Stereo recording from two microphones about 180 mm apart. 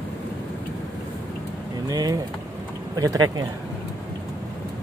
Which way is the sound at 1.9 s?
20° right (ahead or behind).